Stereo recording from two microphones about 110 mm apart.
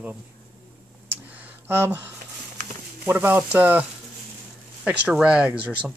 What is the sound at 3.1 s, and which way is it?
Speech, 20° right (ahead or behind).